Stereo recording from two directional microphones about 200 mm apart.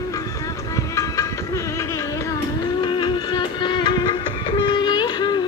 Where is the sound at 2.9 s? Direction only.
25° left (ahead or behind).